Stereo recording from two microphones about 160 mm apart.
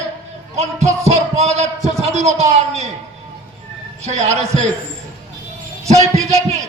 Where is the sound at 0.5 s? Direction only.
40° right (ahead or behind).